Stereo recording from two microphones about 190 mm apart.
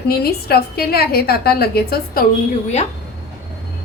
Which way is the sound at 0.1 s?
55° left (ahead or behind).